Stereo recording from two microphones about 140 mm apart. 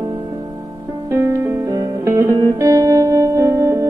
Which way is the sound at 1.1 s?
20° right (ahead or behind).